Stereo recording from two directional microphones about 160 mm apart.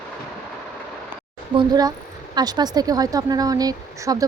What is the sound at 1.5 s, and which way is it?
Speech, 25° right (ahead or behind).